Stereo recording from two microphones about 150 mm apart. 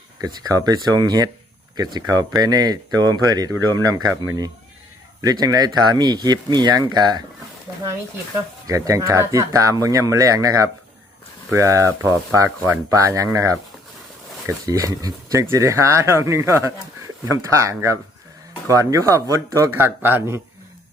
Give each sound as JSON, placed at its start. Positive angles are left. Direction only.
{"t": 0.5, "sound": "speech", "side_deg": -25}
{"t": 8.6, "sound": "speech", "side_deg": -20}